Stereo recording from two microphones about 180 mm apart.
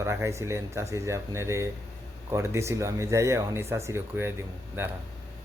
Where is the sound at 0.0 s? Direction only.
15° right (ahead or behind).